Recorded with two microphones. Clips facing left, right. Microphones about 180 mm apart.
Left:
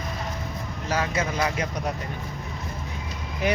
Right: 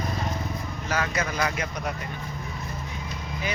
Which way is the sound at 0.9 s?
25° left (ahead or behind).